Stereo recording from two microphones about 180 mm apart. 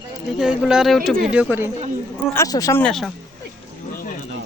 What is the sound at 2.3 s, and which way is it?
Speech, 15° left (ahead or behind).